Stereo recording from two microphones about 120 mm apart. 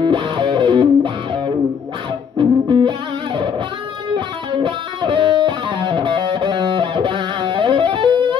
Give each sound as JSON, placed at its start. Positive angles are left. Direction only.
{"t": 0.0, "sound": "music", "side_deg": -40}
{"t": 4.1, "sound": "music", "side_deg": -45}